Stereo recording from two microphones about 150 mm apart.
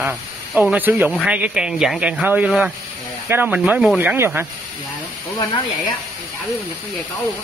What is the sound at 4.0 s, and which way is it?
Speech, 15° right (ahead or behind).